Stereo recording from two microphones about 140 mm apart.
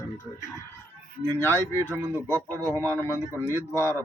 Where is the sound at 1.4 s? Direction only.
15° left (ahead or behind).